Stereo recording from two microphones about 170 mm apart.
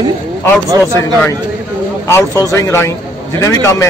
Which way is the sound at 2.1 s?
15° left (ahead or behind).